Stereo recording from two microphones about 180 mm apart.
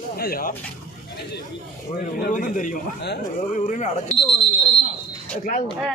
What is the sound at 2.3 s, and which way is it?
Speech, 45° left (ahead or behind).